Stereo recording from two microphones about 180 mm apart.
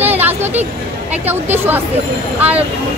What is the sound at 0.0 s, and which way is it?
Vehicle, 10° right (ahead or behind).